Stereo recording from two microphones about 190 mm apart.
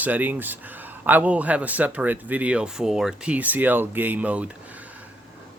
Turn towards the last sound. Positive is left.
turn(degrees=-5)  # may be behind; listen again after turning